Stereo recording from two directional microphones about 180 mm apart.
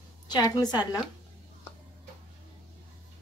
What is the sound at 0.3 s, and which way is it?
Speech, 20° left (ahead or behind).